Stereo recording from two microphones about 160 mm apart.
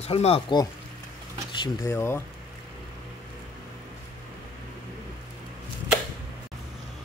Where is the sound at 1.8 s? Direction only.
15° left (ahead or behind).